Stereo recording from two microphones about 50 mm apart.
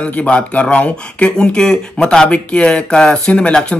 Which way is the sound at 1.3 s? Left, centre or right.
Centre.